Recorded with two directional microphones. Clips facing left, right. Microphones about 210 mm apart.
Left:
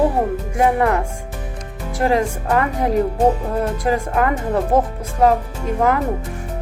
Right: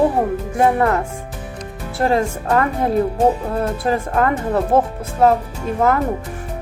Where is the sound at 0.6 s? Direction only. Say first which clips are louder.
Right 1 dB; 15° left (ahead or behind).